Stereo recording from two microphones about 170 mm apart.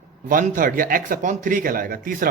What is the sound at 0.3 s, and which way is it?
A man's voice, 55° right (ahead or behind).